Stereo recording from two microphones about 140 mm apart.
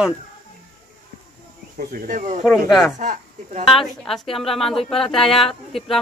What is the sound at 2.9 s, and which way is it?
Speech, 60° right (ahead or behind).